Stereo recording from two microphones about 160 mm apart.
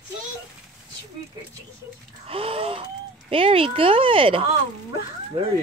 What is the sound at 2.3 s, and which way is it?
Wheeze, 35° right (ahead or behind).